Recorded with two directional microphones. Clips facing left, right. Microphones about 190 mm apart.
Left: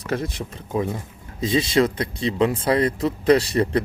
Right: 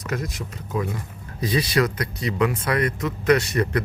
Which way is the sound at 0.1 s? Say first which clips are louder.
Left 4 dB; 30° left (ahead or behind).